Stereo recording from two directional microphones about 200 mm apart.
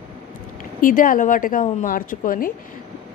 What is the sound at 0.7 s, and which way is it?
Speech, 45° left (ahead or behind).